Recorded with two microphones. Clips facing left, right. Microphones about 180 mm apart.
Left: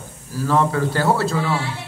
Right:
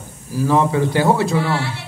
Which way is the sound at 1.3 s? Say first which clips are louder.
Right 3 dB; 5° right (ahead or behind).